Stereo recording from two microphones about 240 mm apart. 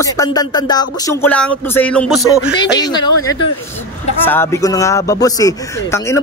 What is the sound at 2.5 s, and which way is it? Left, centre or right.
Speech, centre.